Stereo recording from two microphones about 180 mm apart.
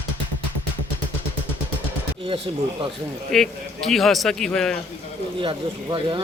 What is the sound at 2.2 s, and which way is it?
Speech, 30° right (ahead or behind).